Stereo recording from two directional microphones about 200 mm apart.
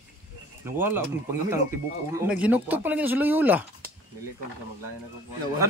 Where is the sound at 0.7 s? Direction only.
10° right (ahead or behind).